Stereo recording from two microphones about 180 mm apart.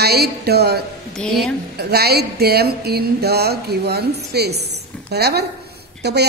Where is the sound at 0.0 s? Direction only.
60° right (ahead or behind).